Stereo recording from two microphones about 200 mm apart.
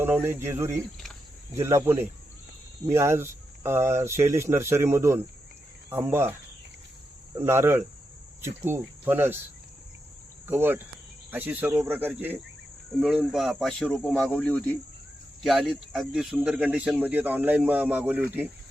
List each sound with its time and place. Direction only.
0.0 s speech: 10° right (ahead or behind)
7.3 s speech: 10° right (ahead or behind)
8.4 s cricket: 10° right (ahead or behind)
10.4 s cricket: 10° right (ahead or behind)
11.3 s speech: 10° right (ahead or behind)